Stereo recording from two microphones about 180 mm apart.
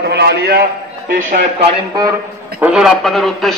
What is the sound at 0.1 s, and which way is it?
Speech, 65° right (ahead or behind).